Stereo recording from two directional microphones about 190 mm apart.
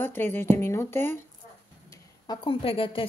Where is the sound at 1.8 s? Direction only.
20° left (ahead or behind).